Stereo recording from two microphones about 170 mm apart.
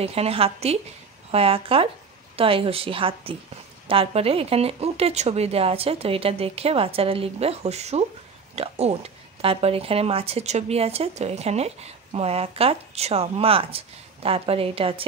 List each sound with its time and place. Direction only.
0.0 s speech: 35° right (ahead or behind)